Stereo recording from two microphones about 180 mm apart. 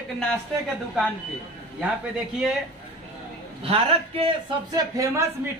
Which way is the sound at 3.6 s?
30° right (ahead or behind).